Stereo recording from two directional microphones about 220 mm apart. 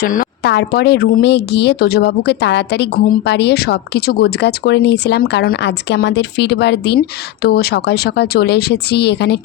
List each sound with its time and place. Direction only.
0.0 s speech: 40° left (ahead or behind)